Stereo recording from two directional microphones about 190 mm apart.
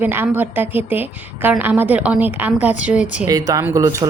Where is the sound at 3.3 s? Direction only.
20° right (ahead or behind).